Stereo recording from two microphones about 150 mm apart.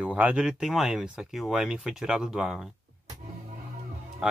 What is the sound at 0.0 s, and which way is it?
A man's voice, 10° right (ahead or behind).